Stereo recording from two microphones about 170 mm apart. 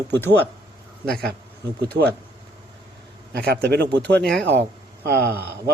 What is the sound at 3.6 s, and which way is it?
Speech, 80° right.